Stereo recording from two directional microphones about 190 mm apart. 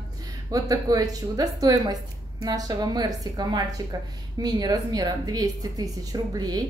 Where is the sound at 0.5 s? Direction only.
20° right (ahead or behind).